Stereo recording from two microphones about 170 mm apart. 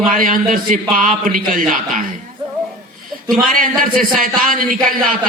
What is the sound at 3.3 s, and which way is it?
A man's voice, 55° right (ahead or behind).